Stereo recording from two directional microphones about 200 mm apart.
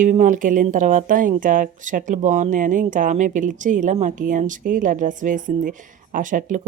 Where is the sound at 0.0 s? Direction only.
40° right (ahead or behind).